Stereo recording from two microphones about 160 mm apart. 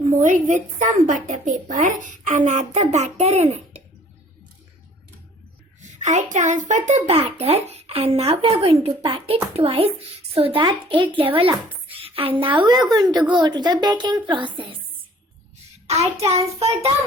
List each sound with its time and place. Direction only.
0.2 s a woman's voice: 50° right (ahead or behind)
6.0 s a child's voice: 50° right (ahead or behind); by 14.8 s 30° right (ahead or behind)
15.9 s a child's voice: 40° right (ahead or behind)